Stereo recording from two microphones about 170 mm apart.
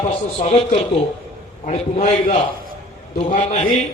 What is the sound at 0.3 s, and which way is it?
A man's voice, 35° left (ahead or behind).